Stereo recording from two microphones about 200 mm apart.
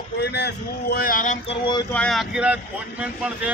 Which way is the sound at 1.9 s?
5° left (ahead or behind).